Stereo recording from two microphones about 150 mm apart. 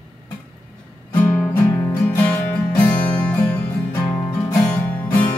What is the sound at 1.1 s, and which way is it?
Music, 5° left (ahead or behind).